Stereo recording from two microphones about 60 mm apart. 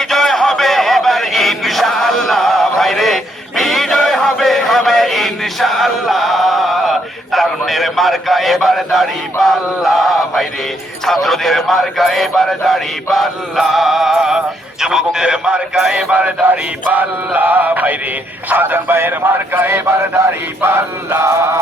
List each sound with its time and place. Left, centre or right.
0.0 s music: centre
11.0 s speech: centre
16.0 s male singing: centre
18.4 s speech: right
21.2 s chant: right